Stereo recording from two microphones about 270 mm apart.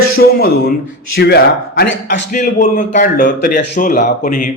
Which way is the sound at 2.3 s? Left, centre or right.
Left.